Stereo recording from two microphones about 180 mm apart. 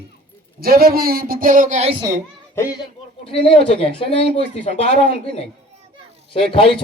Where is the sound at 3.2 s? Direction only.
30° left (ahead or behind).